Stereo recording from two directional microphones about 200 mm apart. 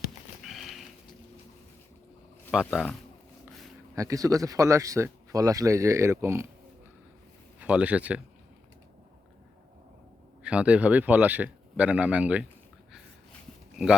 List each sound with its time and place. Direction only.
0.4 s a sound: centre (ahead or behind)
2.5 s speech: centre (ahead or behind)
3.9 s speech: 15° right (ahead or behind)
7.6 s speech: 5° right (ahead or behind)
10.4 s speech: 5° right (ahead or behind)